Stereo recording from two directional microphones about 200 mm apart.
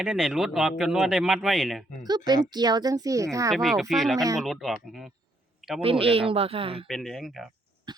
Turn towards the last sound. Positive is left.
turn(degrees=0)  # may be behind; listen again after turning